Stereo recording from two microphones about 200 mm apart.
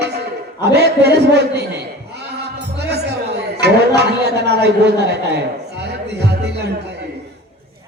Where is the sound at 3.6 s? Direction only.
55° right (ahead or behind).